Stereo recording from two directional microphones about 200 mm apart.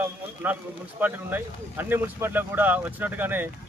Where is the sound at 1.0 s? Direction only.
10° right (ahead or behind).